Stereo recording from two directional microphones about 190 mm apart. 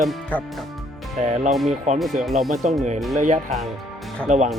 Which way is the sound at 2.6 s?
35° right (ahead or behind).